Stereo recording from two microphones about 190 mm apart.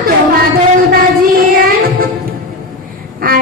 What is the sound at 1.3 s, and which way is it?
Child singing, 50° right (ahead or behind).